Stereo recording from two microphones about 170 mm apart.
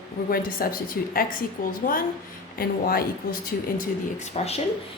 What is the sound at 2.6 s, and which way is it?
A woman's voice, 60° left (ahead or behind).